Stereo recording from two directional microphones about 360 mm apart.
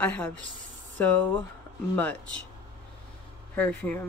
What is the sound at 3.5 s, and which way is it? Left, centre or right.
Speech, centre.